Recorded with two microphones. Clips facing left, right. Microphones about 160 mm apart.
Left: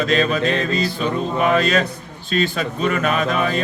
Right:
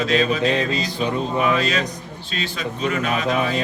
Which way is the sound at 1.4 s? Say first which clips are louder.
Left 7 dB; 50° left (ahead or behind).